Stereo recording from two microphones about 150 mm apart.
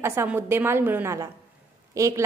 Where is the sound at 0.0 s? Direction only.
15° right (ahead or behind).